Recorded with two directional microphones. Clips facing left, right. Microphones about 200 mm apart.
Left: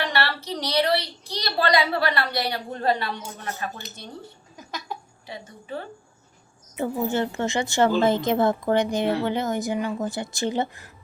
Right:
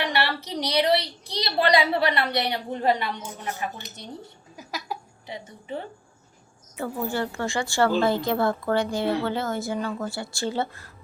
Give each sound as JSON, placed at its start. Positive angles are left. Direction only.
{"t": 0.0, "sound": "a woman's voice", "side_deg": -15}
{"t": 4.5, "sound": "a sound", "side_deg": -5}
{"t": 5.3, "sound": "a woman's voice", "side_deg": -20}
{"t": 6.7, "sound": "a woman's voice", "side_deg": 20}